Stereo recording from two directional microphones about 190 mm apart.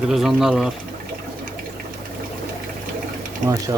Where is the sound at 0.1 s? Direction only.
Centre (ahead or behind).